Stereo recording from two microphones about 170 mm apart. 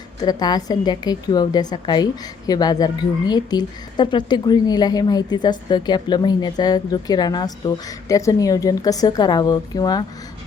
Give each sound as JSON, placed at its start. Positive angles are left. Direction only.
{"t": 0.2, "sound": "a woman's voice", "side_deg": 25}